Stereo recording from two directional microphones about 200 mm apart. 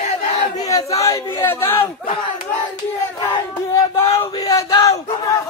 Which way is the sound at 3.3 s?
20° left (ahead or behind).